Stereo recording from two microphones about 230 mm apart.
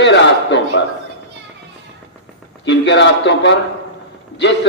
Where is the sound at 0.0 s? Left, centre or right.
Left.